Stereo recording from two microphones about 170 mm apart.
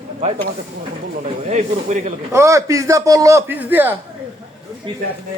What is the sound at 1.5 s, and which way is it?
Speech, 45° right (ahead or behind).